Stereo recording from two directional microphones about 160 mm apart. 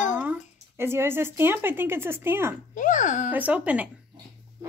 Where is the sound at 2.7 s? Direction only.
50° left (ahead or behind).